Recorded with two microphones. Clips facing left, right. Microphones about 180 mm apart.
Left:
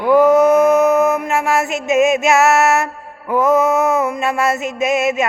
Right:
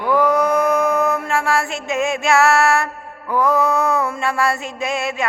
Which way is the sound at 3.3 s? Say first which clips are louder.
Left 4 dB; 20° left (ahead or behind).